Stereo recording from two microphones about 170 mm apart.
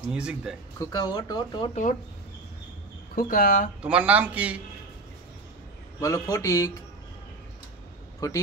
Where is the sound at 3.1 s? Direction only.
55° left (ahead or behind).